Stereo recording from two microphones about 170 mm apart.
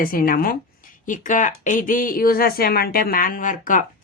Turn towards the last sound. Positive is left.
turn(degrees=50)  # may be behind; listen again after turning